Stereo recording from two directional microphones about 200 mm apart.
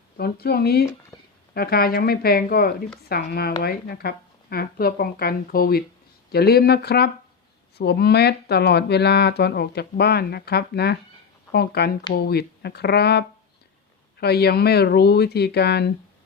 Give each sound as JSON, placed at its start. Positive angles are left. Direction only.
{"t": 0.2, "sound": "speech", "side_deg": 50}
{"t": 1.1, "sound": "a sound", "side_deg": 25}
{"t": 1.5, "sound": "speech", "side_deg": 50}